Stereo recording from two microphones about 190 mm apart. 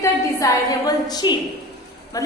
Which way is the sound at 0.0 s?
15° left (ahead or behind).